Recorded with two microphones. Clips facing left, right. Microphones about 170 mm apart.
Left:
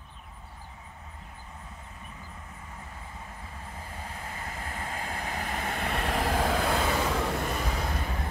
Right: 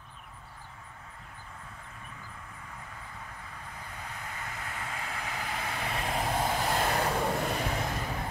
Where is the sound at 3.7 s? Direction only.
30° left (ahead or behind); by 6.5 s 90° left.